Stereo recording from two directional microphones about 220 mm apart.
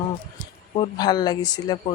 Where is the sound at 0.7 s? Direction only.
20° left (ahead or behind).